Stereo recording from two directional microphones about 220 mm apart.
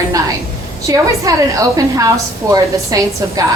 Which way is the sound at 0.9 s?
15° right (ahead or behind).